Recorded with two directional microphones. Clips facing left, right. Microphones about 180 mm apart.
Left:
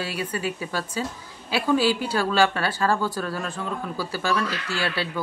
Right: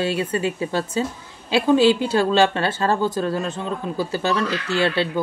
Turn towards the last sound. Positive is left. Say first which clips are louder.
# right 7 dB
turn(degrees=-25)  # may be behind; listen again after turning